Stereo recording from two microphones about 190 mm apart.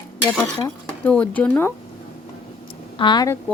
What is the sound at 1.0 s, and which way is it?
Speech, 5° left (ahead or behind).